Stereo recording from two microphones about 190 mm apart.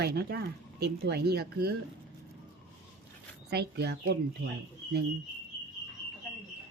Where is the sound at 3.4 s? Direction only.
60° right (ahead or behind).